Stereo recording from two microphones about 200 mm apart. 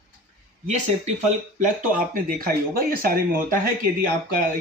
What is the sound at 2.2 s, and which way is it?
Speech, 45° right (ahead or behind).